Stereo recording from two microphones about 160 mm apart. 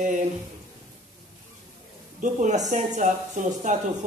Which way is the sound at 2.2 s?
50° right (ahead or behind).